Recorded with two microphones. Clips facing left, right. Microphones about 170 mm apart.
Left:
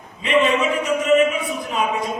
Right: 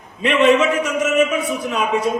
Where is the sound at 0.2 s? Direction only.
75° right (ahead or behind).